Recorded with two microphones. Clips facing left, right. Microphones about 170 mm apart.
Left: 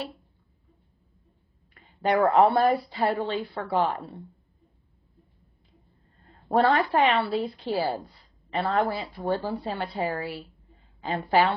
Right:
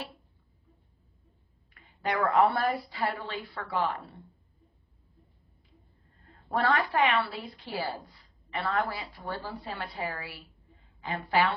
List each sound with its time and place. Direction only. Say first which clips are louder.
1.7 s a woman's voice: left 7 dB; 30° left (ahead or behind)
6.5 s a woman's voice: left 6 dB; 30° left (ahead or behind)